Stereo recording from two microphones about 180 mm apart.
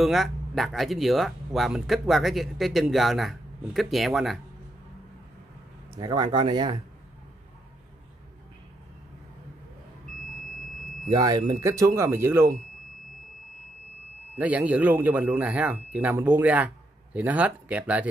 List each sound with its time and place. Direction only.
0.0 s speech: centre (ahead or behind)
5.9 s speech: 25° right (ahead or behind)
11.1 s speech: 20° right (ahead or behind)
14.4 s speech: 10° right (ahead or behind)